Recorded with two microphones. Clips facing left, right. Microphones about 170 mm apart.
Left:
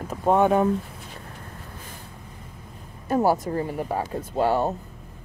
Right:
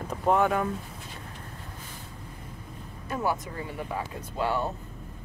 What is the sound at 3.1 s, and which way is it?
Speech, 40° left (ahead or behind).